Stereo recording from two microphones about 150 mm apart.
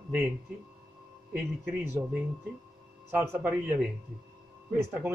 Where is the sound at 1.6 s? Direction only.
15° right (ahead or behind).